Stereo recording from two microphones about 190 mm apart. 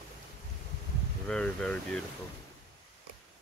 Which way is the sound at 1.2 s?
5° left (ahead or behind).